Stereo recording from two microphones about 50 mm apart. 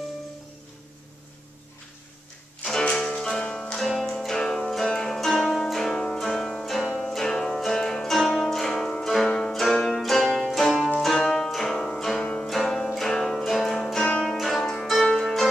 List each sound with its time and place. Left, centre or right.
2.8 s music: centre
3.8 s music: centre
4.3 s music: centre
6.6 s music: centre
14.0 s music: centre
14.3 s music: centre
14.6 s music: centre
14.9 s music: centre